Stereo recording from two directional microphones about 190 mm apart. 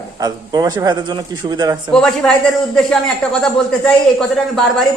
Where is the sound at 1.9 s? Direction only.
5° left (ahead or behind).